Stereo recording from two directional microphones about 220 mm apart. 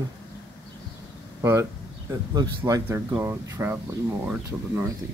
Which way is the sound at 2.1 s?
15° right (ahead or behind).